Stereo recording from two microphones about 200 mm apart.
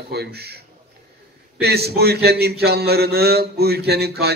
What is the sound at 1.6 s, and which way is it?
A man's voice, 55° right (ahead or behind).